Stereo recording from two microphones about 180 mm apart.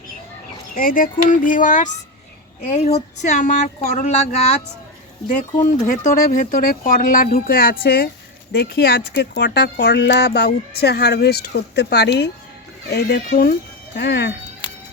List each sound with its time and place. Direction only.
0.8 s speech: 50° left (ahead or behind)
5.6 s speech: 40° left (ahead or behind); by 12.3 s 70° left (ahead or behind)
12.9 s speech: 60° left (ahead or behind)